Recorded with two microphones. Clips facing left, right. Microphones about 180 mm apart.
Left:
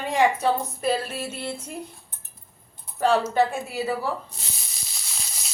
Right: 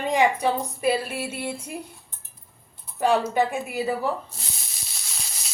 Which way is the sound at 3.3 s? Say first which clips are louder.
Left 1 dB; 15° right (ahead or behind).